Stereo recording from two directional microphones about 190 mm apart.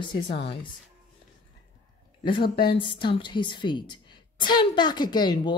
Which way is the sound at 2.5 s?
25° left (ahead or behind).